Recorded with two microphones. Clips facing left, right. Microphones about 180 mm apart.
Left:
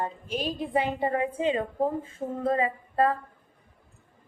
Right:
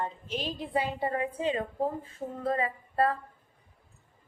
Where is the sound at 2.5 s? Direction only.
20° left (ahead or behind).